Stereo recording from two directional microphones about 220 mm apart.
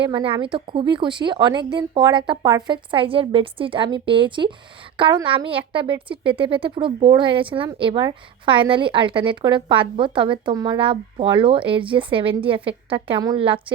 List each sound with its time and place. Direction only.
0.0 s a woman's voice: 25° right (ahead or behind)